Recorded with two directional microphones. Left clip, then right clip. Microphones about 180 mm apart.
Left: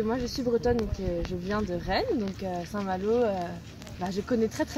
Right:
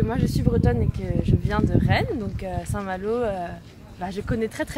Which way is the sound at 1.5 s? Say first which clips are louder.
Right 5 dB; 10° right (ahead or behind).